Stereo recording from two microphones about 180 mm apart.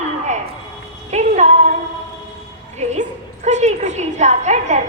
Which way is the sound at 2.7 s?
40° right (ahead or behind).